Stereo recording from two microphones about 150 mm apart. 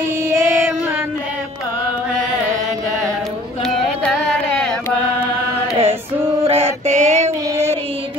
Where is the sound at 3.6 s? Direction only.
Centre (ahead or behind).